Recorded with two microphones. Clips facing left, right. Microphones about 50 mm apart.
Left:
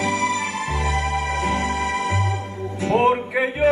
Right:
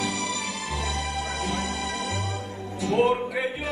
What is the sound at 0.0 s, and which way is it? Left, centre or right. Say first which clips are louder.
Music: left 7 dB; left.